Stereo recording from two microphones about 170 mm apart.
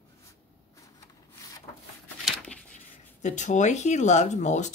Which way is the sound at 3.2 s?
45° left (ahead or behind).